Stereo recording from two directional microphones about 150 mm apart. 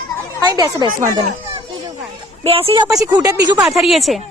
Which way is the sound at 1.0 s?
55° right (ahead or behind).